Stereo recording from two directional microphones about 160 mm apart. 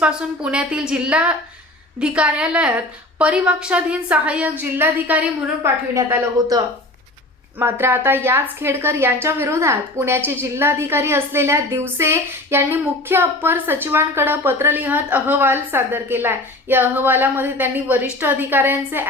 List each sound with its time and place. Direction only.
0.0 s a woman's voice: 5° right (ahead or behind)
7.6 s a woman's voice: 15° right (ahead or behind)